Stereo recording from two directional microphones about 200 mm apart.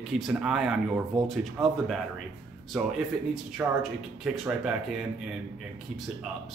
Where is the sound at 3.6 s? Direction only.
10° right (ahead or behind).